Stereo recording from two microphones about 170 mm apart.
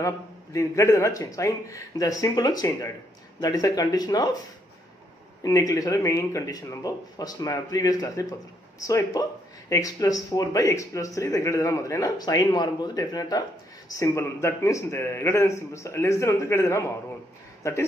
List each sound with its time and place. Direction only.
0.0 s speech: 20° left (ahead or behind)
5.4 s a man's voice: 20° left (ahead or behind)